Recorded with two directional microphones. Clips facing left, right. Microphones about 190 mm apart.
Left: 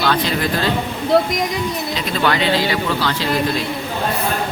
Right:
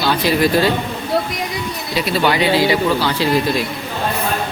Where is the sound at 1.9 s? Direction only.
10° right (ahead or behind).